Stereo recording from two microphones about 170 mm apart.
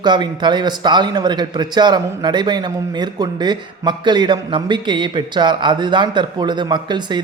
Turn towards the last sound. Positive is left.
turn(degrees=-25)  # may be behind; listen again after turning